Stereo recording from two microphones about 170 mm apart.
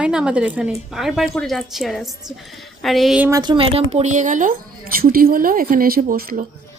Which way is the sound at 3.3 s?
25° right (ahead or behind).